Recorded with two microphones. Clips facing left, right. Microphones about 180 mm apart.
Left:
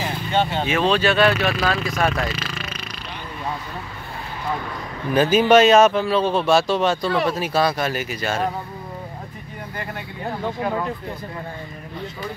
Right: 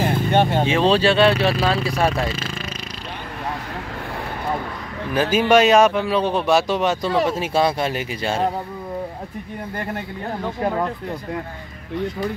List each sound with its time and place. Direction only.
0.0 s vehicle: 55° right (ahead or behind)
0.7 s speech: 30° right (ahead or behind)
5.1 s speech: 5° right (ahead or behind); by 8.5 s 25° right (ahead or behind)